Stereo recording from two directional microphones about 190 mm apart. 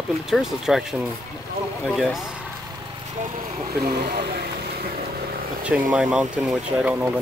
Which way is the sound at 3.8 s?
55° right (ahead or behind).